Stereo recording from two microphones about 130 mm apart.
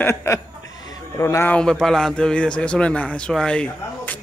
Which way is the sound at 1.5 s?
5° left (ahead or behind).